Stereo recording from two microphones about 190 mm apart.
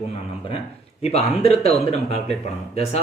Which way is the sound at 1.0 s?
30° left (ahead or behind).